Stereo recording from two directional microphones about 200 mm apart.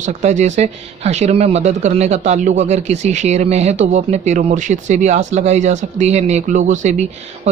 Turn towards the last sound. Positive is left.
turn(degrees=-40)  # may be behind; listen again after turning